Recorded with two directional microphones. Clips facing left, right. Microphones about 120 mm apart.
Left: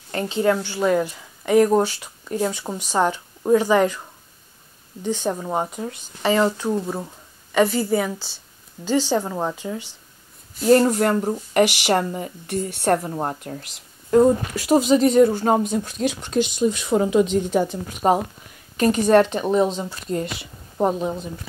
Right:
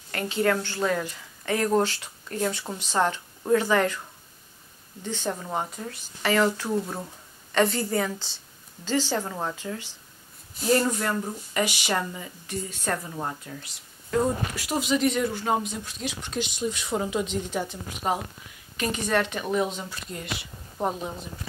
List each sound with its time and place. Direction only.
0.1 s a woman's voice: 20° left (ahead or behind)
5.0 s speech: 15° left (ahead or behind)
7.5 s speech: 5° left (ahead or behind)
10.6 s speech: 45° left (ahead or behind)
11.5 s speech: 70° left (ahead or behind)
11.9 s speech: 45° left (ahead or behind); by 13.1 s 65° left (ahead or behind)
13.1 s a woman's voice: 40° left (ahead or behind)
14.7 s speech: 40° left (ahead or behind)
16.9 s a woman's voice: 75° left (ahead or behind); by 20.2 s 35° left (ahead or behind)